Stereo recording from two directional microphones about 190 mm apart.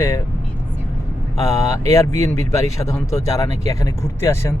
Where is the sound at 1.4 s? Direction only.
15° left (ahead or behind).